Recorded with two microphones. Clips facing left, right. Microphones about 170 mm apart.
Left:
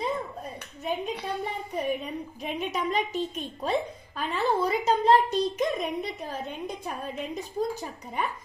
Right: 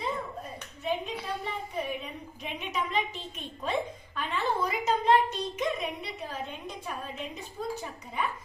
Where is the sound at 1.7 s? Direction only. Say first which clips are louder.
Left 8 dB; 40° left (ahead or behind).